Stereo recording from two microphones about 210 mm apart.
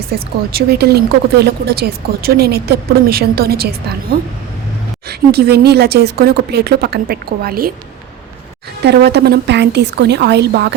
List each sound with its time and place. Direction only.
0.1 s speech: 45° right (ahead or behind)
5.0 s speech: 50° right (ahead or behind)
8.8 s speech: 50° right (ahead or behind)